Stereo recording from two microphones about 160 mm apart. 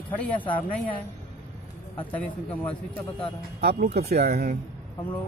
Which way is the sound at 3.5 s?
70° right (ahead or behind).